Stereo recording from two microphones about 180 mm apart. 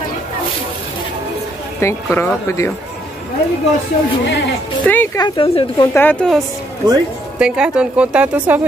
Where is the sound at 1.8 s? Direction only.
15° left (ahead or behind).